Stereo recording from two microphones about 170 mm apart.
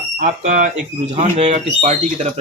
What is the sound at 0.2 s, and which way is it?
Speech, 50° right (ahead or behind).